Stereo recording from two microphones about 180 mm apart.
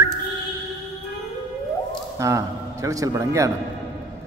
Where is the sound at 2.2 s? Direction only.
15° right (ahead or behind).